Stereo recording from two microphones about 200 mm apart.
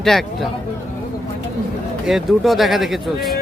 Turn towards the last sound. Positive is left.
turn(degrees=0)  # may be behind; listen again after turning